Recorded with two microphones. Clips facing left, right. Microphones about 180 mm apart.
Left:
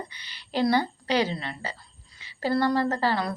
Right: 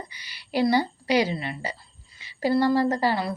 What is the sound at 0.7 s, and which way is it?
A woman's voice, 10° right (ahead or behind).